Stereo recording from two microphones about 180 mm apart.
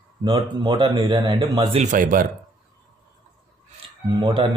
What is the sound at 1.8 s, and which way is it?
Speech, 45° right (ahead or behind).